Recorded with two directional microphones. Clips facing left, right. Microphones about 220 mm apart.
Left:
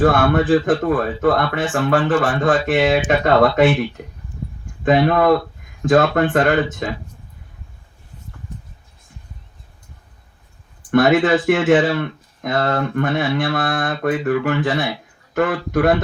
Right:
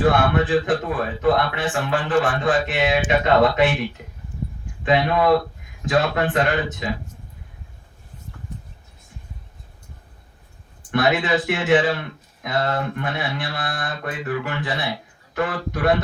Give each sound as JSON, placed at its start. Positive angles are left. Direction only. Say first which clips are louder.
{"t": 0.0, "sound": "speech", "louder": "left 3 dB", "side_deg": 45}
{"t": 10.9, "sound": "speech", "louder": "left 6 dB", "side_deg": 50}